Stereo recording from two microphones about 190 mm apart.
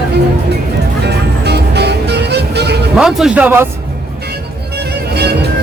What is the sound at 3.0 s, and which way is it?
Speech, 5° right (ahead or behind).